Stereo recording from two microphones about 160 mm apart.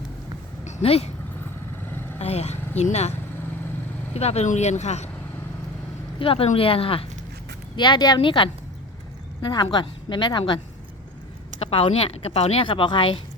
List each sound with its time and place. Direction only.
0.6 s a sound: 40° left (ahead or behind)
2.1 s speech: 45° left (ahead or behind)
6.1 s speech: 35° left (ahead or behind)
11.6 s speech: 35° left (ahead or behind)